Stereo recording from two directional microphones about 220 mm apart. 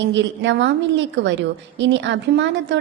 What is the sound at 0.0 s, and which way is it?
A woman's voice, 55° right (ahead or behind).